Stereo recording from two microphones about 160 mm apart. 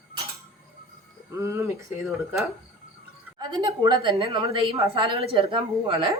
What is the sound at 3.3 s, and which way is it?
A woman's voice, 25° right (ahead or behind).